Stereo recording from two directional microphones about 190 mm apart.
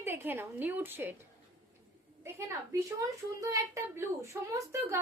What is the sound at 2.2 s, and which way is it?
Speech, 15° right (ahead or behind).